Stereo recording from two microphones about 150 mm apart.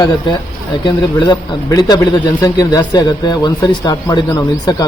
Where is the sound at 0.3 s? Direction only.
30° left (ahead or behind).